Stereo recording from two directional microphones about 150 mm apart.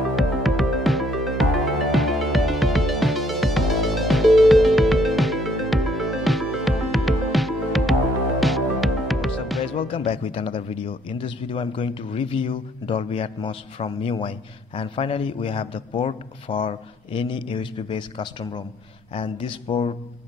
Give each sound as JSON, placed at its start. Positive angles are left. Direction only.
{"t": 0.1, "sound": "music", "side_deg": 0}
{"t": 9.8, "sound": "speech", "side_deg": 35}